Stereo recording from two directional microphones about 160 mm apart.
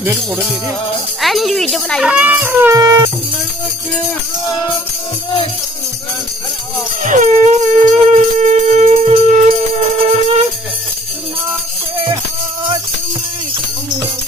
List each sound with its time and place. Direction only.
1.2 s speech: centre (ahead or behind); by 3.1 s 25° right (ahead or behind)
7.0 s music: 50° right (ahead or behind)